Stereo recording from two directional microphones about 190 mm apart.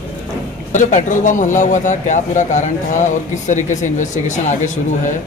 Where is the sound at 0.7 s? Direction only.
40° left (ahead or behind).